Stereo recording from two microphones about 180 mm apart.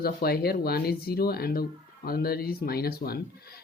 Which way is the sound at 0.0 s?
60° left (ahead or behind).